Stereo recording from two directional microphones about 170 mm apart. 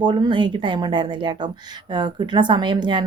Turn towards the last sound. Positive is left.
turn(degrees=-25)  # may be behind; listen again after turning